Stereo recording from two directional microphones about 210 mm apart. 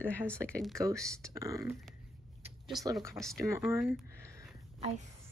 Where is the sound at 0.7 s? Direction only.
15° right (ahead or behind).